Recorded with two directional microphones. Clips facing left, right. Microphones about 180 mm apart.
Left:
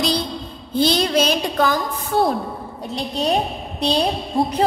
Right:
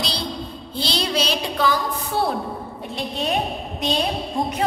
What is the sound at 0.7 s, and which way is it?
A woman's voice, 50° left (ahead or behind).